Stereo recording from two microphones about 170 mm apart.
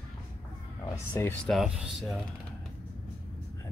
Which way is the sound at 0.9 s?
10° left (ahead or behind).